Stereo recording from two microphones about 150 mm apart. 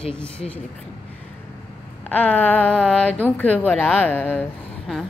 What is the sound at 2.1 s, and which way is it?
A woman's voice, 10° left (ahead or behind).